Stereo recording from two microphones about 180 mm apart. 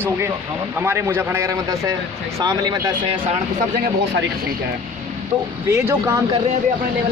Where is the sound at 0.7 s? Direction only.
15° right (ahead or behind).